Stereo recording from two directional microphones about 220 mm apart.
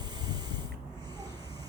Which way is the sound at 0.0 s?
20° right (ahead or behind).